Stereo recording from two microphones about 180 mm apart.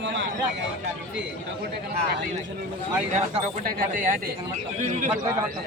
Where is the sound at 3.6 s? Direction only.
50° right (ahead or behind).